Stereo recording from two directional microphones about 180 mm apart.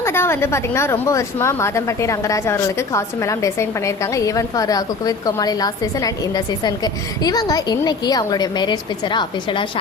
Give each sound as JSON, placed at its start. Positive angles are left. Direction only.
{"t": 0.0, "sound": "a woman's voice", "side_deg": 15}